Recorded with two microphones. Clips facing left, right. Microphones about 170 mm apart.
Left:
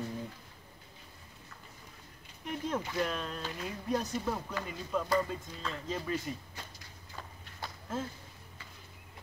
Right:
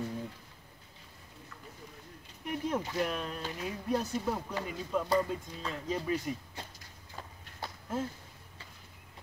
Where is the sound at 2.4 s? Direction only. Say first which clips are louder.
Right 2 dB; 5° right (ahead or behind).